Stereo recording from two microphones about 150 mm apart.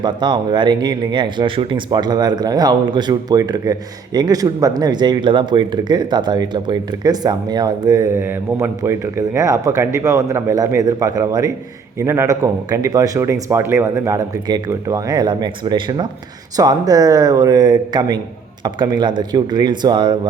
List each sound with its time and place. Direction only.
0.0 s speech: 30° right (ahead or behind)
8.2 s speech: 15° right (ahead or behind); by 20.1 s 30° right (ahead or behind)